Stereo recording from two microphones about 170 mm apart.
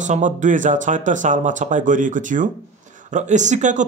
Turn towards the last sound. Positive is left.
turn(degrees=-45)  # may be behind; listen again after turning